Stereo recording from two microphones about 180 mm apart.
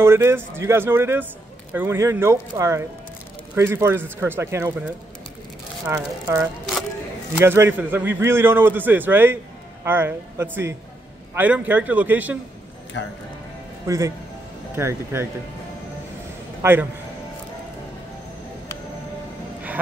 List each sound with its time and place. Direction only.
0.0 s a man's voice: 15° right (ahead or behind)
5.9 s a man's voice: 15° right (ahead or behind)
13.8 s a man's voice: 20° right (ahead or behind)
16.6 s a man's voice: 15° right (ahead or behind)